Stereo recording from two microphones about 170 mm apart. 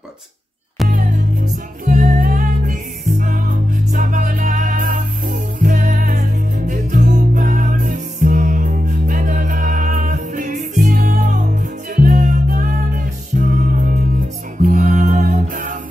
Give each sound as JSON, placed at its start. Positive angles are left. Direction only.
{"t": 0.8, "sound": "music", "side_deg": -50}